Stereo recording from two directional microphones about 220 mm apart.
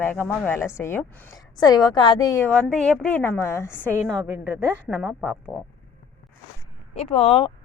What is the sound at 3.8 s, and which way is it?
Speech, 10° right (ahead or behind).